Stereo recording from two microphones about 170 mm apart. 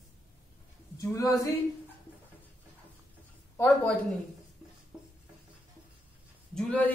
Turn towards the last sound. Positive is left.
turn(degrees=10)  # may be behind; listen again after turning